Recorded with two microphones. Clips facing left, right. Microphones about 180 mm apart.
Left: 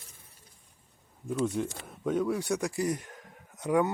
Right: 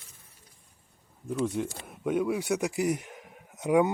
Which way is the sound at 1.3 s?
Centre (ahead or behind).